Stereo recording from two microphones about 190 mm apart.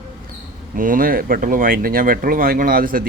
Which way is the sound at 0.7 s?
45° right (ahead or behind).